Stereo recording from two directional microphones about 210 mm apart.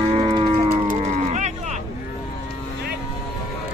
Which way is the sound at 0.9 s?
35° right (ahead or behind).